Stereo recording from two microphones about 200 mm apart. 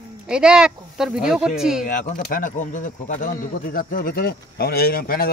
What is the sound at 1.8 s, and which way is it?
Speech, 45° left (ahead or behind).